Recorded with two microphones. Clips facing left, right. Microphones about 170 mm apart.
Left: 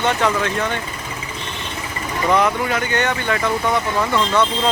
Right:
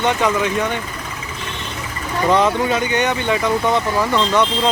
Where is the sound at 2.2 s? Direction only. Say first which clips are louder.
Right 2 dB; 20° right (ahead or behind).